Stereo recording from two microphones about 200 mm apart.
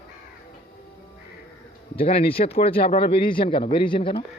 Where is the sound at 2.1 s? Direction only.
30° left (ahead or behind).